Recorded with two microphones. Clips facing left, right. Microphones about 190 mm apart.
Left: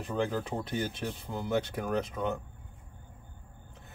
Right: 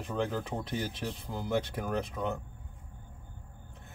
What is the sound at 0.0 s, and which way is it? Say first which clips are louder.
Speech: left 1 dB; centre (ahead or behind).